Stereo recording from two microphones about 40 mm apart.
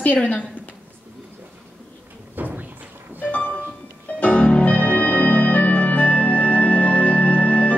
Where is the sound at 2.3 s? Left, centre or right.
Right.